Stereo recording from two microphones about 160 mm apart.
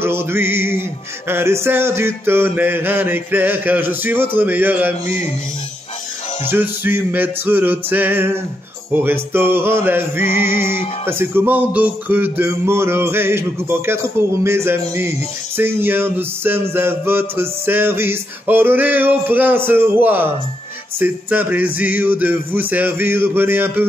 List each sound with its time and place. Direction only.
0.0 s music: 15° right (ahead or behind)
6.5 s music: 15° right (ahead or behind)
10.3 s music: 60° left (ahead or behind)
11.1 s music: 15° right (ahead or behind)